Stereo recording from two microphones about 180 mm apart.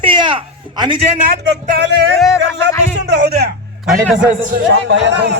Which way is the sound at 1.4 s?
70° right (ahead or behind).